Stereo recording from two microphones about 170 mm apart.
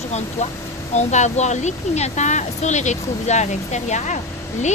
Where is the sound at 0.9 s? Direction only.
45° left (ahead or behind).